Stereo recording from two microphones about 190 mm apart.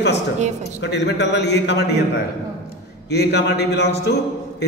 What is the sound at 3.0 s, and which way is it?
Speech, 60° left (ahead or behind).